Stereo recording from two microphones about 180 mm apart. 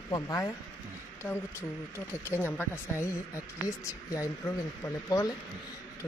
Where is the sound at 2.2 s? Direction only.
10° left (ahead or behind).